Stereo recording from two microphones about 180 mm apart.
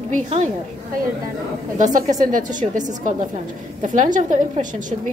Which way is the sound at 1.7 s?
45° right (ahead or behind).